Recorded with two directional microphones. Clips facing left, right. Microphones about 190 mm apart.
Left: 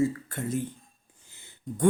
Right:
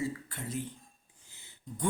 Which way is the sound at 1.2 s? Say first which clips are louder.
Left 10 dB; 50° left (ahead or behind).